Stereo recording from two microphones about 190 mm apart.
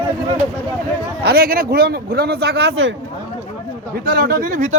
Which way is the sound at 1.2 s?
55° right (ahead or behind).